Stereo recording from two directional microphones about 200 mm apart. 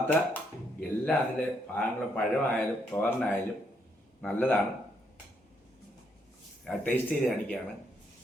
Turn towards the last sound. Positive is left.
turn(degrees=5)  # may be behind; listen again after turning